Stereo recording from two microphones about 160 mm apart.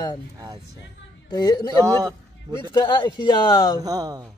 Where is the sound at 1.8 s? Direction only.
20° right (ahead or behind).